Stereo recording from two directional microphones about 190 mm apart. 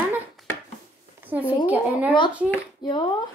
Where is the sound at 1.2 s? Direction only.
10° right (ahead or behind).